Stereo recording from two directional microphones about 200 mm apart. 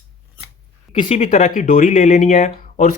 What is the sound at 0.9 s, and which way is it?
Speech, 35° left (ahead or behind).